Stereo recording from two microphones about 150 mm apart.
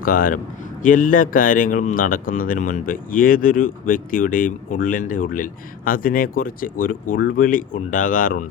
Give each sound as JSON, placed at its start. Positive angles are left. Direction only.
{"t": 0.0, "sound": "speech", "side_deg": 65}